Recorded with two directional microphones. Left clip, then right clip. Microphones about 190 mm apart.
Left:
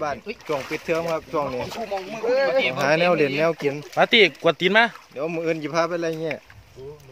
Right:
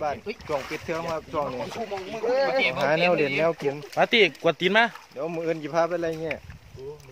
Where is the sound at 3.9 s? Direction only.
20° left (ahead or behind).